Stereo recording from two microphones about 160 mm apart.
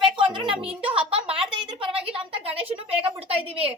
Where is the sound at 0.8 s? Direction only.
5° right (ahead or behind).